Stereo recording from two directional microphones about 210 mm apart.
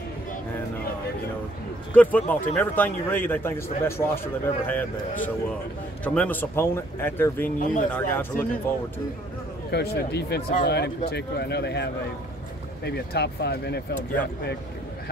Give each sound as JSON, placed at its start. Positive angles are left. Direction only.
{"t": 2.0, "sound": "speech", "side_deg": 5}
{"t": 6.0, "sound": "speech", "side_deg": 10}
{"t": 7.4, "sound": "speech", "side_deg": 40}
{"t": 7.9, "sound": "speech", "side_deg": 10}
{"t": 9.7, "sound": "speech", "side_deg": 50}